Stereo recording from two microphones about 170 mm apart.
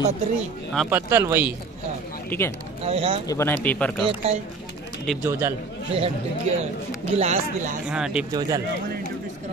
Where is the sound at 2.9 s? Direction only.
35° right (ahead or behind).